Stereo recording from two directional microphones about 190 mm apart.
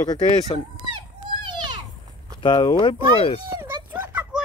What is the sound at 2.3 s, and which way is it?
Speech, 25° left (ahead or behind).